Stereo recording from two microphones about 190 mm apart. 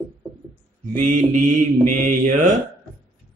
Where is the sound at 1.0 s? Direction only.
40° right (ahead or behind).